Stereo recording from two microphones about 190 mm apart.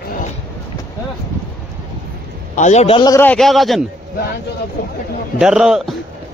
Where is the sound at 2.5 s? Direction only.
40° left (ahead or behind).